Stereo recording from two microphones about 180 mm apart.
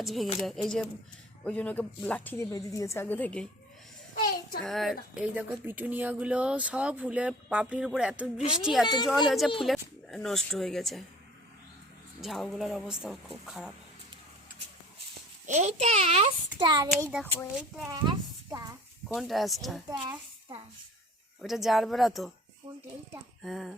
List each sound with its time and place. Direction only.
0.0 s a woman's voice: centre (ahead or behind)
4.1 s a sound: 50° left (ahead or behind)
4.6 s speech: centre (ahead or behind)
12.2 s speech: centre (ahead or behind)
15.4 s a child's voice: 40° right (ahead or behind)
16.6 s child singing: 25° right (ahead or behind)
17.1 s speech: 5° right (ahead or behind)
17.8 s a sound: 25° right (ahead or behind)
19.0 s speech: centre (ahead or behind)
21.4 s speech: centre (ahead or behind)
23.4 s speech: centre (ahead or behind)